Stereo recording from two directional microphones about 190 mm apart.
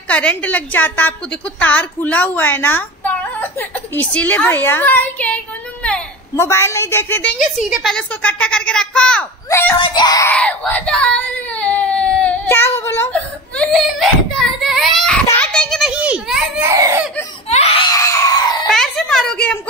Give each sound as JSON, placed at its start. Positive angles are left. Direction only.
{"t": 0.1, "sound": "speech", "side_deg": 5}
{"t": 7.3, "sound": "a child's voice", "side_deg": 0}
{"t": 9.8, "sound": "speech", "side_deg": 25}
{"t": 10.3, "sound": "a child's voice", "side_deg": 5}
{"t": 11.6, "sound": "child singing", "side_deg": 5}
{"t": 12.8, "sound": "whimper", "side_deg": 15}
{"t": 15.2, "sound": "a sound", "side_deg": 5}
{"t": 17.5, "sound": "screaming", "side_deg": 35}
{"t": 17.9, "sound": "a sound", "side_deg": 15}
{"t": 18.7, "sound": "a sound", "side_deg": 0}